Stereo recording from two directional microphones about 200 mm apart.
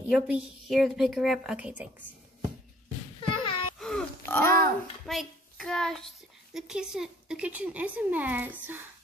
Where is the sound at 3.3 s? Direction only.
25° left (ahead or behind).